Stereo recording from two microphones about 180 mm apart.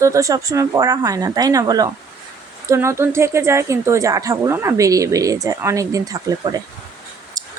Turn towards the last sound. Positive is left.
turn(degrees=-20)  # may be behind; listen again after turning